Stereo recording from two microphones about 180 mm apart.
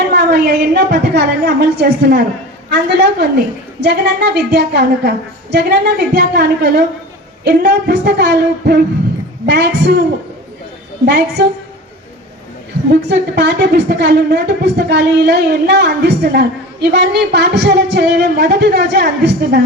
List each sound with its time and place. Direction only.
0.1 s a woman's voice: 65° right (ahead or behind)
11.0 s a woman's voice: 70° right (ahead or behind)
12.9 s a woman's voice: 65° right (ahead or behind)